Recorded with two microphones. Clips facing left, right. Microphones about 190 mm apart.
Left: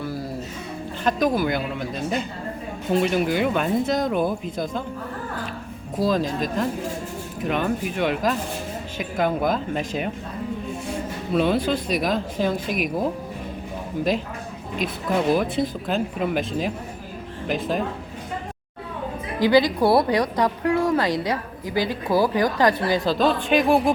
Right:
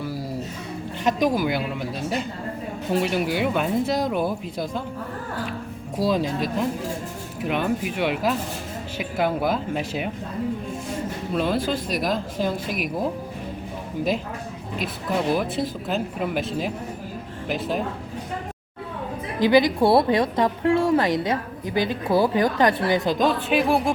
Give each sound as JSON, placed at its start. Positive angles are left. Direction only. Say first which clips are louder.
{"t": 0.0, "sound": "music", "louder": "left 1 dB", "side_deg": -10}
{"t": 1.0, "sound": "speech", "louder": "even", "side_deg": -15}
{"t": 2.9, "sound": "speech", "louder": "left 2 dB", "side_deg": -5}
{"t": 6.0, "sound": "speech", "louder": "even", "side_deg": -10}
{"t": 11.3, "sound": "speech", "louder": "left 3 dB", "side_deg": 0}
{"t": 14.8, "sound": "speech", "louder": "left 2 dB", "side_deg": 0}
{"t": 19.4, "sound": "a woman's voice", "louder": "even", "side_deg": -20}
{"t": 23.5, "sound": "speech", "louder": "left 2 dB", "side_deg": 0}